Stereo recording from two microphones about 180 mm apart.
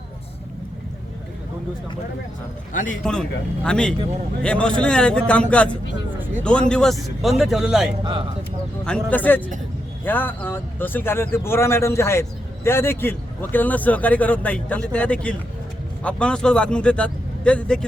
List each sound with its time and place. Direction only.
3.0 s speech: 5° left (ahead or behind)
8.0 s speech: 25° right (ahead or behind)
9.0 s a man's voice: 10° left (ahead or behind)